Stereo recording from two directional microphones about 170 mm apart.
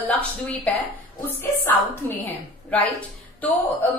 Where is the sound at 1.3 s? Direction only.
10° left (ahead or behind).